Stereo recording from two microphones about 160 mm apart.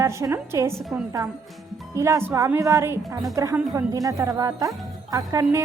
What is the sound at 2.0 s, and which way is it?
A woman's voice, 15° right (ahead or behind).